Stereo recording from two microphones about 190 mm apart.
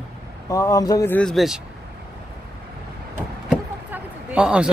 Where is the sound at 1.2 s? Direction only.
Centre (ahead or behind).